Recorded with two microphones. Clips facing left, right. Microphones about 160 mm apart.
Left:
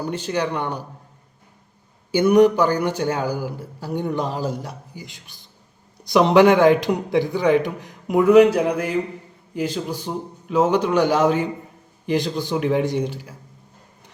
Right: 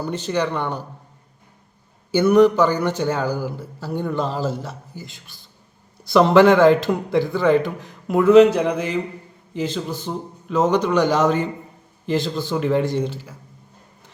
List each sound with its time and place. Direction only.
0.0 s a man's voice: 10° left (ahead or behind)
2.1 s a man's voice: 15° left (ahead or behind)